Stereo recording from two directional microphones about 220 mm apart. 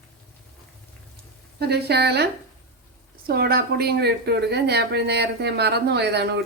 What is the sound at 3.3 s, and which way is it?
A woman's voice, 45° right (ahead or behind).